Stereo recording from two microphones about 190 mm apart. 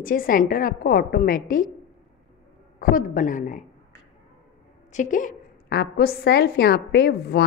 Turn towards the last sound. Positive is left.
turn(degrees=55)  # may be behind; listen again after turning